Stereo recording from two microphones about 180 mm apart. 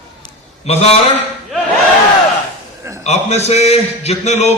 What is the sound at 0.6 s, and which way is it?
Speech, 35° left (ahead or behind).